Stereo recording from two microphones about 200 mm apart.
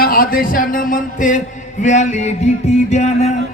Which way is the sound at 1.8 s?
35° left (ahead or behind).